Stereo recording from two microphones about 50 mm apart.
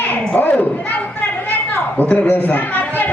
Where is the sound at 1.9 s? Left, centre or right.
Left.